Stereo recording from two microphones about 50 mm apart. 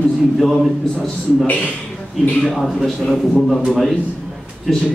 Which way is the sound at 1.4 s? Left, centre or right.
Left.